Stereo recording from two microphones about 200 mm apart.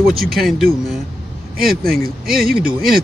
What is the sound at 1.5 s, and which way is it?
Speech, 45° right (ahead or behind).